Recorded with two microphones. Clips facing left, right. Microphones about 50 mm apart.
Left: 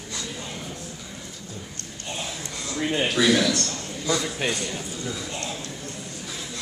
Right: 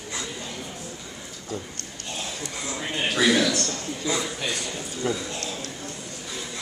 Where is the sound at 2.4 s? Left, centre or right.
Centre.